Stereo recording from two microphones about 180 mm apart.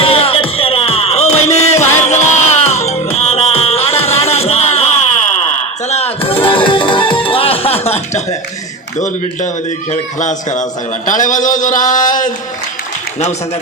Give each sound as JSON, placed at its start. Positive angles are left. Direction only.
{"t": 0.0, "sound": "music", "side_deg": 30}
{"t": 5.9, "sound": "music", "side_deg": 35}
{"t": 9.0, "sound": "a man's voice", "side_deg": 45}